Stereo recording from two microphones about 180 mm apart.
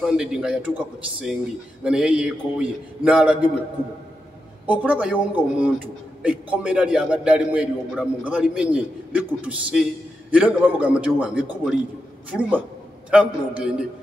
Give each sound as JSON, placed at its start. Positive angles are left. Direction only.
{"t": 0.0, "sound": "a man's voice", "side_deg": -5}
{"t": 4.6, "sound": "a man's voice", "side_deg": -10}